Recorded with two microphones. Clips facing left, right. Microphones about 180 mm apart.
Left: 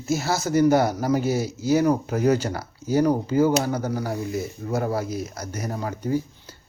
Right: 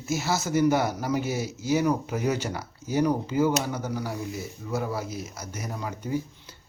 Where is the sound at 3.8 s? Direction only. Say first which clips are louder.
Left 4 dB; 45° left (ahead or behind).